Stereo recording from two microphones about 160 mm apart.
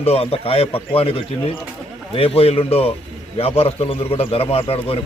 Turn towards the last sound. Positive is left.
turn(degrees=35)  # may be behind; listen again after turning